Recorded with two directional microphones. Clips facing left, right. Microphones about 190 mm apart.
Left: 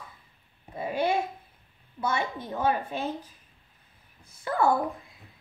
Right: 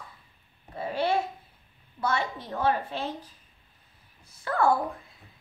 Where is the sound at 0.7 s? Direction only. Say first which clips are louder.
Even; 15° left (ahead or behind).